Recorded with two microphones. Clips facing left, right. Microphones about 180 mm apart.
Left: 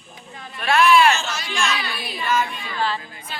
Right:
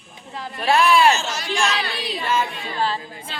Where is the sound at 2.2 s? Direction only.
30° right (ahead or behind).